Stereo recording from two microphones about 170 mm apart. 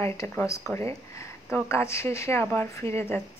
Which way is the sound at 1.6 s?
15° left (ahead or behind).